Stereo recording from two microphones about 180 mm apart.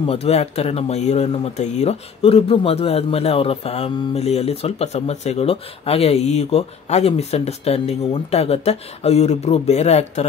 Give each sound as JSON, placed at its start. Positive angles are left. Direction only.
{"t": 0.0, "sound": "speech", "side_deg": 35}